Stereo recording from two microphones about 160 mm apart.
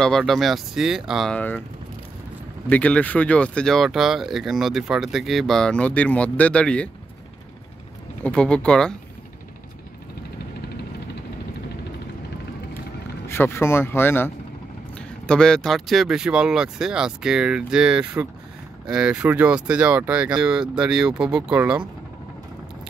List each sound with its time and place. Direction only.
0.0 s speech: centre (ahead or behind)
2.7 s speech: 10° left (ahead or behind)
8.2 s speech: 5° left (ahead or behind)
13.3 s speech: 15° left (ahead or behind); by 21.8 s 5° right (ahead or behind)